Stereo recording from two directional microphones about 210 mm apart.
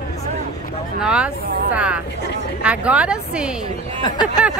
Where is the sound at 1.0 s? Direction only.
5° right (ahead or behind).